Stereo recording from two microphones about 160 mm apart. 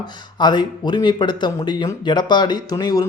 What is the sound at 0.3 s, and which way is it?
Speech, 30° left (ahead or behind).